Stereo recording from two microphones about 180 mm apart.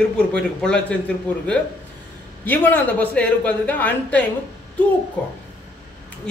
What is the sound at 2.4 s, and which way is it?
A woman's voice, 10° left (ahead or behind).